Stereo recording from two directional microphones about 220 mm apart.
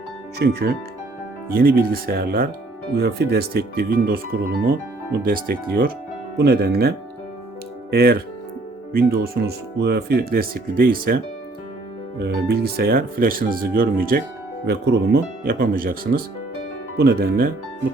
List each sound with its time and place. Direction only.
0.3 s speech: 45° right (ahead or behind)
12.2 s speech: 50° right (ahead or behind)